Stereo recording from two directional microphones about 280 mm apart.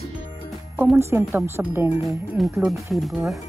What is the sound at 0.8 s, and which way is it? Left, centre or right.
Speech, centre.